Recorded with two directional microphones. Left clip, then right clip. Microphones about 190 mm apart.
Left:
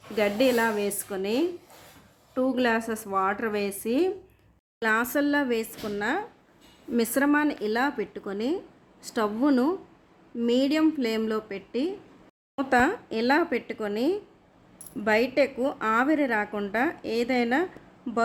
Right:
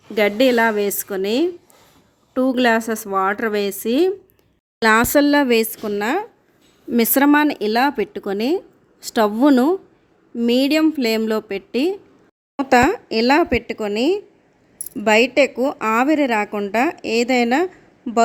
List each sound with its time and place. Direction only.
0.2 s a woman's voice: 40° right (ahead or behind)
4.8 s a woman's voice: 50° right (ahead or behind)